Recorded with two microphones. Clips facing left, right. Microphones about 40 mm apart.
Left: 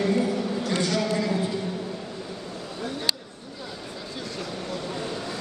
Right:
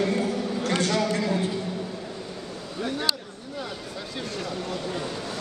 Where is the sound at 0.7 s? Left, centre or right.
Right.